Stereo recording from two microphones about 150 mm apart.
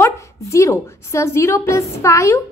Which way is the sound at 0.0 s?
20° left (ahead or behind).